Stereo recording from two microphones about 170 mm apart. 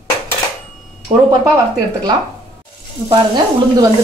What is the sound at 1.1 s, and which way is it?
Speech, 35° right (ahead or behind).